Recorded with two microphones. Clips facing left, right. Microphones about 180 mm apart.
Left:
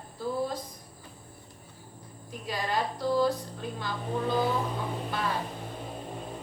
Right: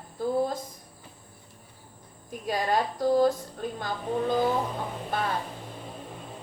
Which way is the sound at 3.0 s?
45° right (ahead or behind).